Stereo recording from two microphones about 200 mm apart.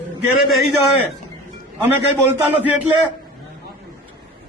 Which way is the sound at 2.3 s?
10° right (ahead or behind).